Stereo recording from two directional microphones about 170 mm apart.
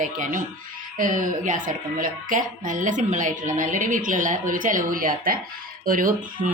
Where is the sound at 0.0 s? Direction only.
50° right (ahead or behind).